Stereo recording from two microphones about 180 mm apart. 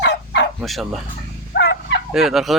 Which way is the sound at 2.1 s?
Centre (ahead or behind).